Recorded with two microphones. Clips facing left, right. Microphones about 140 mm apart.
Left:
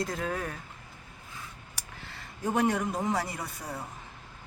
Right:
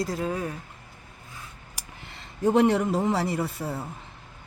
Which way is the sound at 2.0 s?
20° right (ahead or behind).